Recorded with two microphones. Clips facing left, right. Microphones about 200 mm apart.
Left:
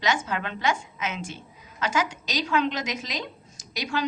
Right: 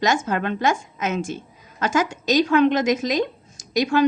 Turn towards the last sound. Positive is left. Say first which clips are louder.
# right 10 dB
turn(degrees=-50)  # may be behind; listen again after turning